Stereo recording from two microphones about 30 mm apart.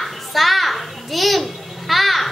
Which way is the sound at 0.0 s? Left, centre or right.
Centre.